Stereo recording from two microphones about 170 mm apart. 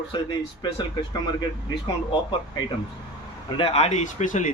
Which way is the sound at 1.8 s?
25° left (ahead or behind).